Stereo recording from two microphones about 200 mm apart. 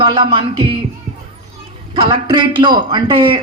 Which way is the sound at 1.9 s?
25° right (ahead or behind).